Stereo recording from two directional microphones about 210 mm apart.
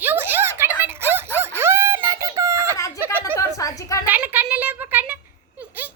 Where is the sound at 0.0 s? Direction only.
10° right (ahead or behind).